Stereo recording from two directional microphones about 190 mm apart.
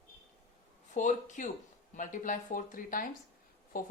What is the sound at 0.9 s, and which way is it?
A woman's voice, 40° left (ahead or behind).